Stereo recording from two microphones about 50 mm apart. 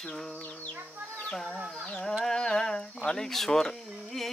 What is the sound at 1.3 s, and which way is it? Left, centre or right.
Speech, centre.